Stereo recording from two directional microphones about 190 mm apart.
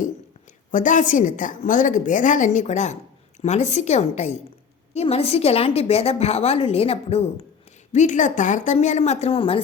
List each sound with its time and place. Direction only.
0.7 s a woman's voice: 40° left (ahead or behind)